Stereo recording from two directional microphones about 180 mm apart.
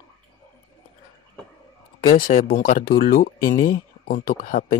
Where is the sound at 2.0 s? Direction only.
50° left (ahead or behind).